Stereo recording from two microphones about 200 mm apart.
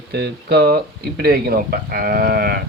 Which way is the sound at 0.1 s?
50° right (ahead or behind).